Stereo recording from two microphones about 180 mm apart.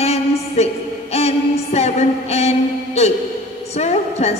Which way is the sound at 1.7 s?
35° left (ahead or behind).